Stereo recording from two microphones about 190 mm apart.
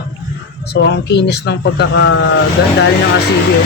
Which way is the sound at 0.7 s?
65° left (ahead or behind).